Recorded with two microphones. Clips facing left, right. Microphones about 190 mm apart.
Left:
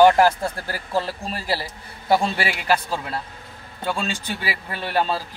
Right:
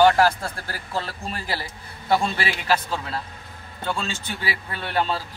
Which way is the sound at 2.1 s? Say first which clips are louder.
Left 2 dB; 15° left (ahead or behind).